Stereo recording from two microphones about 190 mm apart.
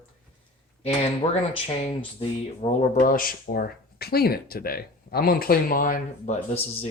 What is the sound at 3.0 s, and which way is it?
Speech, 45° left (ahead or behind).